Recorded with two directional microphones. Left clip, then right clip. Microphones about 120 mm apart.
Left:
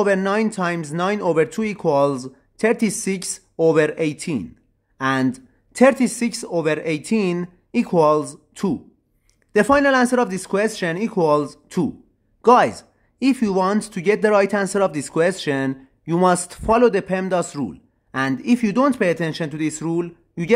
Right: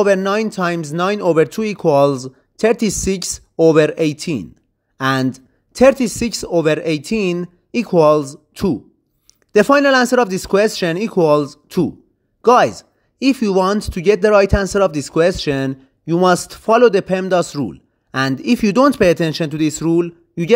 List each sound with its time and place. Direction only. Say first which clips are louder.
0.0 s speech: right 4 dB; 30° right (ahead or behind)